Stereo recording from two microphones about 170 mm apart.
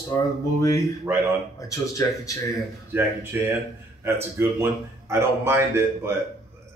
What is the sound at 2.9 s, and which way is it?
A man's voice, 15° right (ahead or behind).